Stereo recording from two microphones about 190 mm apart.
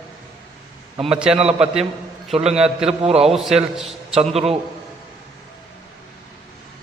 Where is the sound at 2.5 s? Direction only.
5° right (ahead or behind).